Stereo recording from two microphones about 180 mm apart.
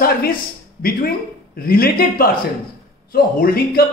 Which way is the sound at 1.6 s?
55° left (ahead or behind).